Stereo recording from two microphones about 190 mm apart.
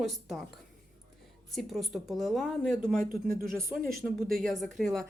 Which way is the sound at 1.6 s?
Centre (ahead or behind).